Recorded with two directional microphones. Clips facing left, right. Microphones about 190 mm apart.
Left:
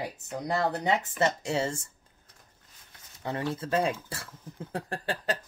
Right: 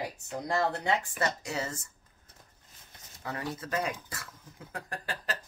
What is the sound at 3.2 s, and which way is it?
Speech, 25° left (ahead or behind).